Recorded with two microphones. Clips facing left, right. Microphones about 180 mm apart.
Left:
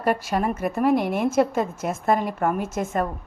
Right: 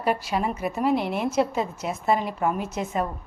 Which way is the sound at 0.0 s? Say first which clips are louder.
Left 2 dB; 50° left (ahead or behind).